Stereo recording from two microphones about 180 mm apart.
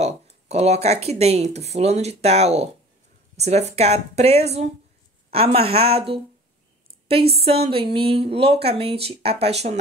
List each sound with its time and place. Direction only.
0.0 s speech: 35° right (ahead or behind)